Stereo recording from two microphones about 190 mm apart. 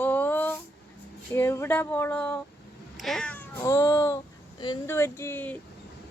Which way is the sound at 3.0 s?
Centre (ahead or behind).